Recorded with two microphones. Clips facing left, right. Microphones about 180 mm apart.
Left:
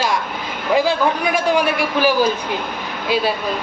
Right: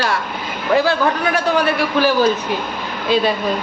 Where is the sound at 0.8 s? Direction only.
15° left (ahead or behind).